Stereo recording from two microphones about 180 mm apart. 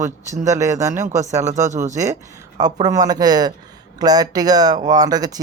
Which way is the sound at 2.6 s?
20° right (ahead or behind).